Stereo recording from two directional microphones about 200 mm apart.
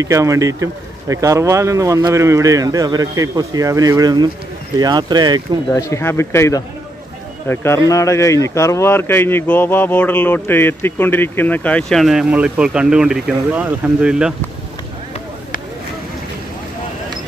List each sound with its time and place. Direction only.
0.0 s speech: 15° right (ahead or behind)
5.7 s speech: 15° left (ahead or behind); by 14.3 s 5° right (ahead or behind)